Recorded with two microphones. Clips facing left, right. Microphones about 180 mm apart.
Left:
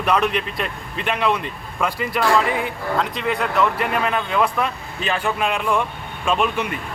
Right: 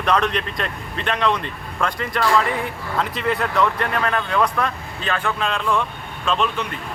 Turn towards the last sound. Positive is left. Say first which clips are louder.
# left 2 dB
turn(degrees=10)  # may be behind; listen again after turning